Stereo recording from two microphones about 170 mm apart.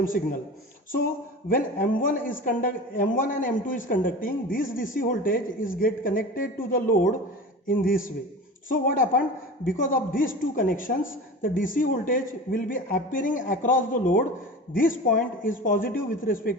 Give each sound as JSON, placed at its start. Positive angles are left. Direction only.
{"t": 0.0, "sound": "a man's voice", "side_deg": 55}
{"t": 1.5, "sound": "a man's voice", "side_deg": 55}